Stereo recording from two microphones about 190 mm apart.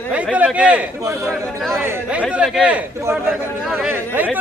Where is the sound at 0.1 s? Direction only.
5° right (ahead or behind).